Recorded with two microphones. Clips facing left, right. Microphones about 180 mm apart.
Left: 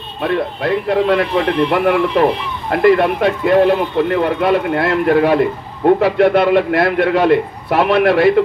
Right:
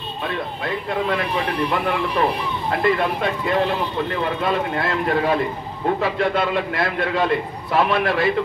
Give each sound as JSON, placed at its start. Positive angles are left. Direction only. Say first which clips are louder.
{"t": 0.2, "sound": "speech", "louder": "left 9 dB", "side_deg": 65}